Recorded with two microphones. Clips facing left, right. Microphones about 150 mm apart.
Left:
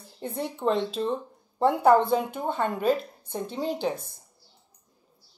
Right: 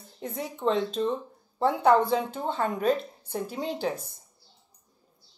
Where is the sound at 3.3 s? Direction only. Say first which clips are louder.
Right 1 dB; 20° left (ahead or behind).